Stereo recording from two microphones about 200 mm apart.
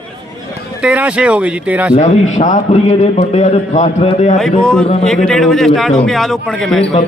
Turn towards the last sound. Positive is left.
turn(degrees=5)  # may be behind; listen again after turning